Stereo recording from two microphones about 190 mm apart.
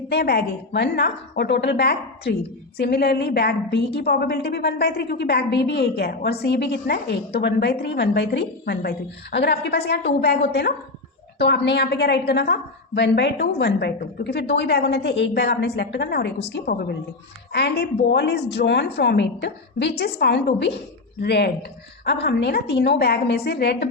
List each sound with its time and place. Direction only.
0.1 s a woman's voice: 60° left (ahead or behind)